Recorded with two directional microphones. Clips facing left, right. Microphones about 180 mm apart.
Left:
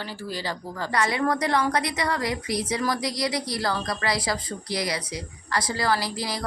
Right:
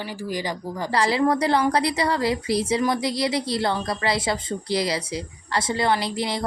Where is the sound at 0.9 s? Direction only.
30° right (ahead or behind).